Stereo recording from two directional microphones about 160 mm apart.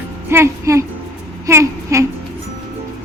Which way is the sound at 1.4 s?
20° right (ahead or behind).